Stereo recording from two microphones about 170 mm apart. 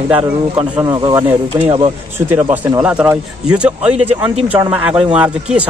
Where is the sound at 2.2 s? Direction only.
10° right (ahead or behind).